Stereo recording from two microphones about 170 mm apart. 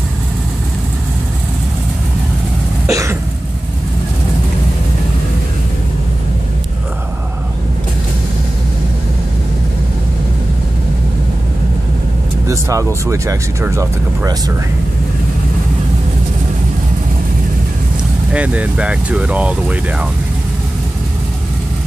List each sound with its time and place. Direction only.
2.9 s cough: 20° right (ahead or behind)
12.4 s speech: 20° right (ahead or behind)
18.3 s speech: 10° right (ahead or behind)